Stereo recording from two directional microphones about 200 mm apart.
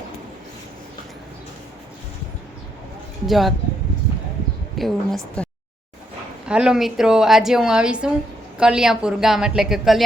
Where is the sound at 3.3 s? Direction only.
Centre (ahead or behind).